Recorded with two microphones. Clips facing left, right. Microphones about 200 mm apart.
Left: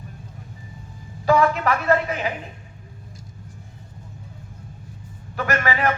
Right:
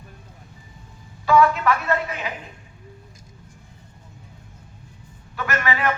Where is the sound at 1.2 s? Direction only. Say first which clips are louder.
Right 1 dB; 40° left (ahead or behind).